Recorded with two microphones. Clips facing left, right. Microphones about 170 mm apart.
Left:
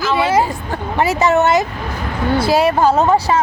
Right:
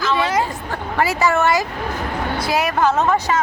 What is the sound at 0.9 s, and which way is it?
A woman's voice, 20° left (ahead or behind).